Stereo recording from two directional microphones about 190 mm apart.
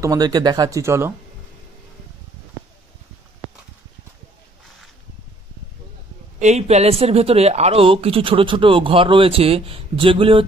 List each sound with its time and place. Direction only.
0.0 s speech: 20° right (ahead or behind)
6.4 s speech: 35° right (ahead or behind)